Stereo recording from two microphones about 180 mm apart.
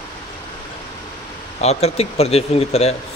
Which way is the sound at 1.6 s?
35° left (ahead or behind).